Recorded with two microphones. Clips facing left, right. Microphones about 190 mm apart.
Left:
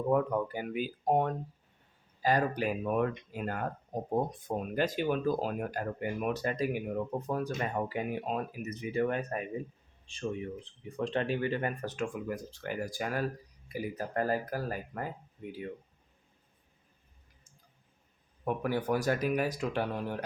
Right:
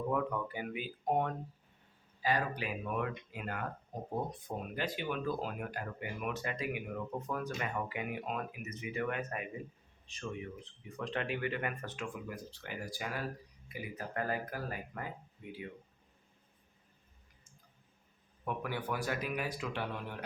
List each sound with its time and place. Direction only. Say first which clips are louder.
0.1 s speech: left 10 dB; 40° left (ahead or behind)
10.9 s speech: left 6 dB; 30° left (ahead or behind)
18.4 s speech: left 7 dB; 40° left (ahead or behind)